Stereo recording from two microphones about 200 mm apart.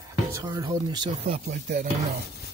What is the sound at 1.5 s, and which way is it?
Speech, 40° right (ahead or behind).